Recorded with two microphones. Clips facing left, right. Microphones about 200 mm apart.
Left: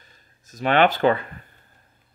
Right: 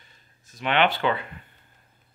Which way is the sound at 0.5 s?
40° left (ahead or behind).